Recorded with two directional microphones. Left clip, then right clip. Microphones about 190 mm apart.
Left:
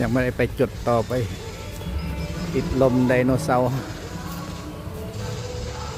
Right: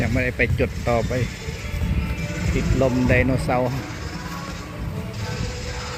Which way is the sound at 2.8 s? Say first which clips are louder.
Left 1 dB; 20° left (ahead or behind).